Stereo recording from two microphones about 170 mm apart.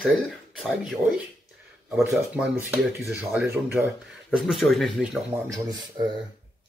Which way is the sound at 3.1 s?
10° right (ahead or behind).